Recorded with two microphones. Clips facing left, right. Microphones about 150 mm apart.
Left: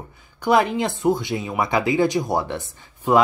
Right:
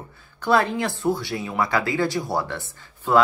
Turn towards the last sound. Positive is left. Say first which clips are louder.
# left 1 dB
turn(degrees=20)  # may be behind; listen again after turning